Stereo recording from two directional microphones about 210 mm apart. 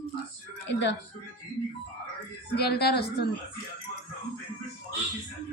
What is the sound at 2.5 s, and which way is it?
Speech, 50° left (ahead or behind).